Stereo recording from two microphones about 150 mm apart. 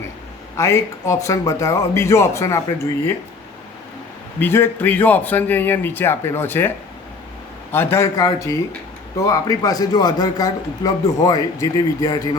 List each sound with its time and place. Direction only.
0.5 s a man's voice: 20° left (ahead or behind)
4.4 s a man's voice: 15° left (ahead or behind)